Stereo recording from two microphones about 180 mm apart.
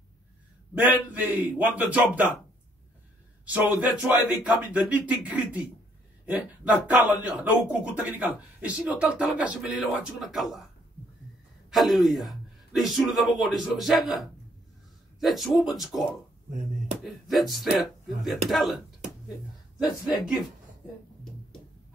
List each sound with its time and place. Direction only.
0.7 s speech: 10° right (ahead or behind)
3.4 s speech: 10° right (ahead or behind)
11.7 s a man's voice: centre (ahead or behind)
16.4 s speech: 40° right (ahead or behind)
17.0 s a man's voice: centre (ahead or behind)